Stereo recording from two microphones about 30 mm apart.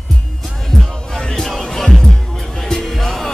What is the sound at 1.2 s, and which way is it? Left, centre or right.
Music, left.